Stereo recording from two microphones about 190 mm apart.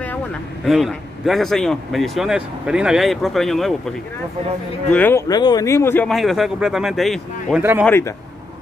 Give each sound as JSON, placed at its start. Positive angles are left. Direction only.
{"t": 0.7, "sound": "speech", "side_deg": 0}
{"t": 4.9, "sound": "speech", "side_deg": 10}
{"t": 5.3, "sound": "speech", "side_deg": 20}
{"t": 6.0, "sound": "speech", "side_deg": 0}
{"t": 7.8, "sound": "speech", "side_deg": 10}